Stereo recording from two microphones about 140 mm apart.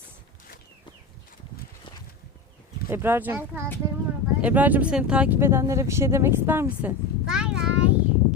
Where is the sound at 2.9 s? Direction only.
15° right (ahead or behind).